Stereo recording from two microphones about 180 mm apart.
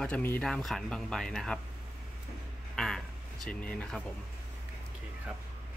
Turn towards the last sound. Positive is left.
turn(degrees=5)  # may be behind; listen again after turning